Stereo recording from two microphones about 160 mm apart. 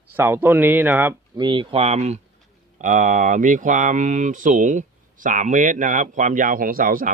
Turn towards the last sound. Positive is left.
turn(degrees=-60)  # may be behind; listen again after turning